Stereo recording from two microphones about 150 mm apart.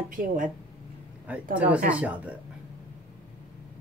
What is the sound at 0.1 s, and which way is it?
Speech, 65° right (ahead or behind).